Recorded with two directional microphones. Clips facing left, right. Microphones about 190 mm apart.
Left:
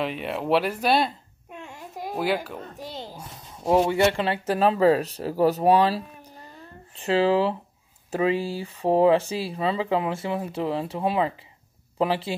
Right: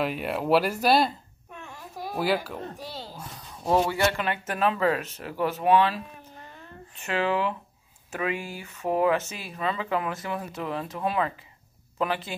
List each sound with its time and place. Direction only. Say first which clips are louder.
0.0 s speech: even; 5° right (ahead or behind)
1.5 s a sound: left 3 dB; 20° left (ahead or behind)
2.1 s speech: even; 5° right (ahead or behind)
2.8 s speech: left 2 dB; 20° left (ahead or behind)